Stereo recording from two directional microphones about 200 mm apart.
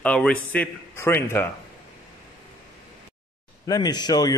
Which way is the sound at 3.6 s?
20° left (ahead or behind).